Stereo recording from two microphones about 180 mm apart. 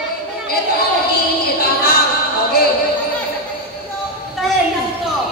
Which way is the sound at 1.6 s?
60° left (ahead or behind).